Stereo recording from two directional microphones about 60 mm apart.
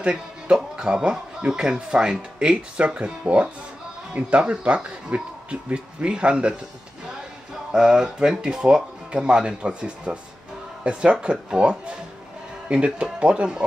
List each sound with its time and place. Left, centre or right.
0.0 s speech: centre
7.7 s speech: centre